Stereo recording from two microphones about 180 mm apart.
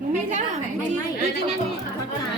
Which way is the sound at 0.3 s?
40° right (ahead or behind).